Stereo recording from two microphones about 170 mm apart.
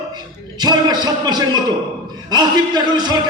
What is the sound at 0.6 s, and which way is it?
A man's voice, 25° right (ahead or behind).